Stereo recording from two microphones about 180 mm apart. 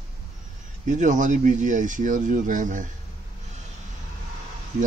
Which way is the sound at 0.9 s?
45° right (ahead or behind).